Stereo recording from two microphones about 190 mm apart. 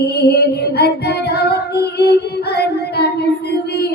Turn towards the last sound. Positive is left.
turn(degrees=60)  # may be behind; listen again after turning